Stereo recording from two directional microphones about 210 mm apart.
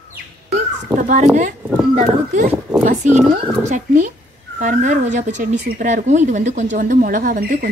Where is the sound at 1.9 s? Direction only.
30° right (ahead or behind).